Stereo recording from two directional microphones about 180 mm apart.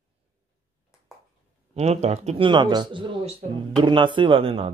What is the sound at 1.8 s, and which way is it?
Speech, 35° right (ahead or behind).